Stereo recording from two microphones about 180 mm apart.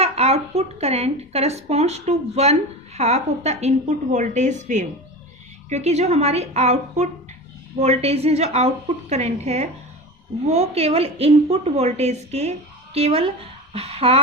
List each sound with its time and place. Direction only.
0.0 s speech: 35° right (ahead or behind)